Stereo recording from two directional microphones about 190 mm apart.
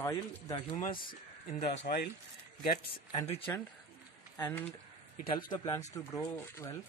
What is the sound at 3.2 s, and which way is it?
Speech, 30° left (ahead or behind).